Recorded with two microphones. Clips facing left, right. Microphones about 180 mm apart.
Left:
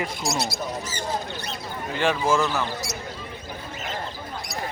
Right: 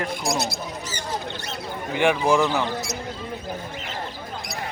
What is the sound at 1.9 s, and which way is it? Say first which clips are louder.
Speech: right 3 dB; 15° right (ahead or behind).